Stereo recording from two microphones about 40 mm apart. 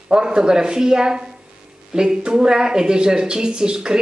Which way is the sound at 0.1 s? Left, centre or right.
Right.